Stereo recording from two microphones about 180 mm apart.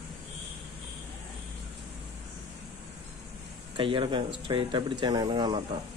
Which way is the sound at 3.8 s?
30° right (ahead or behind).